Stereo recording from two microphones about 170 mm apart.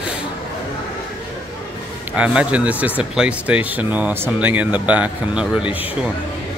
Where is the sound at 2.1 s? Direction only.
5° right (ahead or behind).